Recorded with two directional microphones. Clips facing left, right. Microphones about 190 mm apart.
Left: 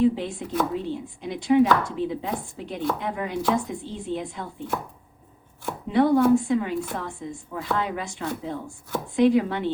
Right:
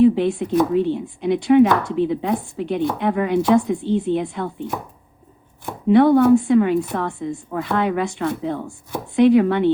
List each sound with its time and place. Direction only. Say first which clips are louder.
0.0 s a woman's voice: right 7 dB; 65° right (ahead or behind)
5.9 s a woman's voice: right 6 dB; 65° right (ahead or behind)